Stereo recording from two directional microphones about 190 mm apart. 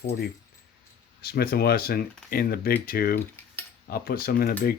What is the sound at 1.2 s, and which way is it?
Speech, 55° left (ahead or behind).